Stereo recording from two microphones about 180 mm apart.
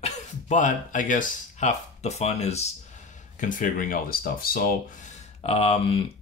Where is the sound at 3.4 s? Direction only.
50° left (ahead or behind).